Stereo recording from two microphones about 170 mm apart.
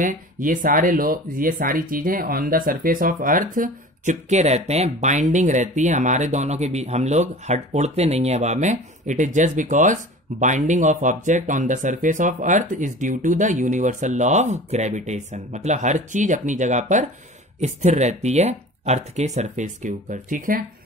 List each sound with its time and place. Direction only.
0.0 s speech: 55° right (ahead or behind)